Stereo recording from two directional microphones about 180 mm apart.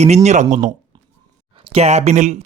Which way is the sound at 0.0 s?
40° right (ahead or behind).